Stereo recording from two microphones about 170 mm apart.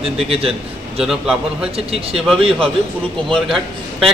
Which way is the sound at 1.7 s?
35° right (ahead or behind).